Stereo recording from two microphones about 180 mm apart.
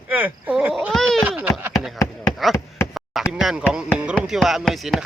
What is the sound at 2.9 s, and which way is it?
Chop, centre (ahead or behind).